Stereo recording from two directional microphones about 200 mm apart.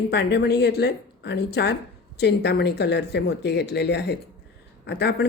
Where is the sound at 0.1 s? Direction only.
55° left (ahead or behind).